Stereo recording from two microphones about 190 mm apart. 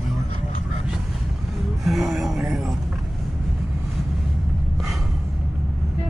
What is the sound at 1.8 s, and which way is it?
Speech, centre (ahead or behind).